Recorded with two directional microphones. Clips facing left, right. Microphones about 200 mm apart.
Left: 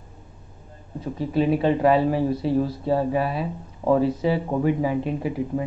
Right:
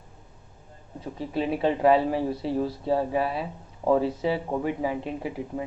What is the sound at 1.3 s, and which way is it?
Speech, 25° right (ahead or behind).